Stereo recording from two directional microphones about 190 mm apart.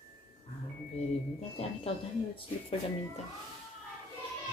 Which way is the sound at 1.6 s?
30° left (ahead or behind).